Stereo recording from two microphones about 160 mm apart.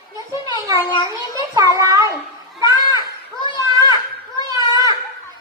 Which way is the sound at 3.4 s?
25° left (ahead or behind).